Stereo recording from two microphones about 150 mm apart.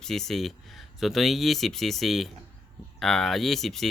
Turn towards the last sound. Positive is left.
turn(degrees=0)  # may be behind; listen again after turning